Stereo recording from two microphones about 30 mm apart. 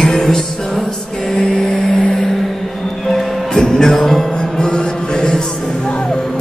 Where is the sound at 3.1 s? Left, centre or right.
Left.